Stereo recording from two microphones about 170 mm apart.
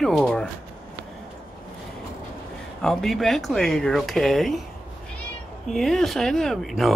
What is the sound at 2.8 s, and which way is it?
Speech, centre (ahead or behind).